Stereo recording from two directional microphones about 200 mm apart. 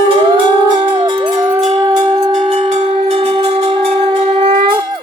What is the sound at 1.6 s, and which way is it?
Music, 25° right (ahead or behind).